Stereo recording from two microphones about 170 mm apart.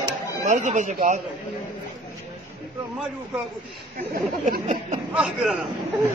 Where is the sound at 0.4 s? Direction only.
45° right (ahead or behind).